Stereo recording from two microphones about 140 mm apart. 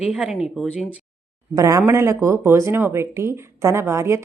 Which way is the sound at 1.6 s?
20° right (ahead or behind).